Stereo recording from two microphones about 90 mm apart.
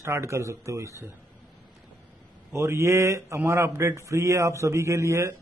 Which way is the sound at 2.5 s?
30° right (ahead or behind).